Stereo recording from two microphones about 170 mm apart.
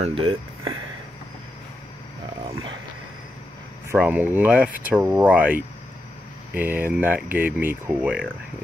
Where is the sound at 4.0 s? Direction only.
10° right (ahead or behind).